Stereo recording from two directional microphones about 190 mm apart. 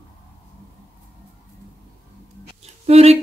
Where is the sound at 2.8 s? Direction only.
35° right (ahead or behind).